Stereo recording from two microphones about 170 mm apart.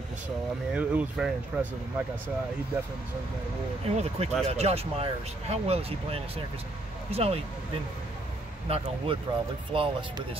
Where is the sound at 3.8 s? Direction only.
40° right (ahead or behind).